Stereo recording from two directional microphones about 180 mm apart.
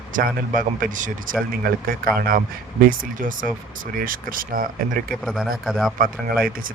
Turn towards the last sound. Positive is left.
turn(degrees=-55)  # may be behind; listen again after turning